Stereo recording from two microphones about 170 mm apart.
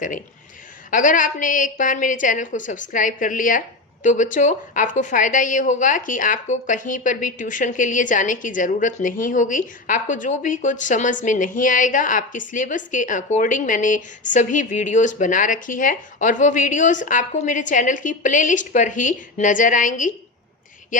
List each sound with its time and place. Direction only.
0.9 s a woman's voice: 50° left (ahead or behind)